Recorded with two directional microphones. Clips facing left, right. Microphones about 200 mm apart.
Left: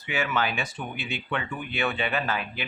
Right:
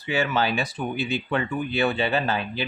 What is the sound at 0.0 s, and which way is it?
Speech, 30° right (ahead or behind).